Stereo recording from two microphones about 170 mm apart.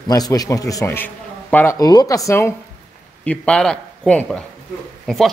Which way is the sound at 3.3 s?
5° left (ahead or behind).